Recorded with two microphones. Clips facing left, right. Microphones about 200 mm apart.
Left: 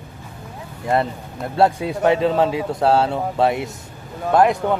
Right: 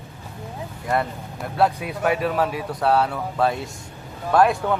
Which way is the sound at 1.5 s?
25° left (ahead or behind).